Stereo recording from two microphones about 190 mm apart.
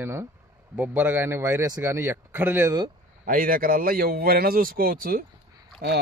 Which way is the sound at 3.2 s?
50° right (ahead or behind).